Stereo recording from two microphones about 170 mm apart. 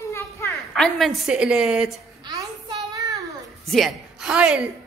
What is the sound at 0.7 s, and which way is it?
A woman's voice, centre (ahead or behind).